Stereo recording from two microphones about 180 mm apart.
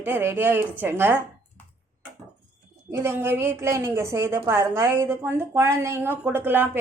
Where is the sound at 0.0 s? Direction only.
15° right (ahead or behind).